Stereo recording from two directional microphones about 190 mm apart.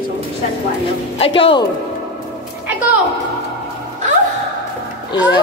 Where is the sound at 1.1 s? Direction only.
30° left (ahead or behind).